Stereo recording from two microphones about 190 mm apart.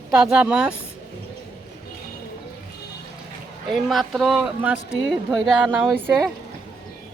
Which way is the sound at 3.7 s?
Centre (ahead or behind).